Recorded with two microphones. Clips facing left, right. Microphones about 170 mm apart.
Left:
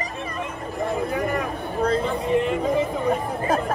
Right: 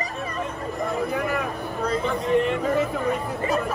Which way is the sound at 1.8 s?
30° left (ahead or behind).